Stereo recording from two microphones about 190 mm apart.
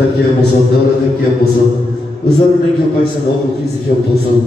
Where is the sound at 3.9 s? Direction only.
50° left (ahead or behind).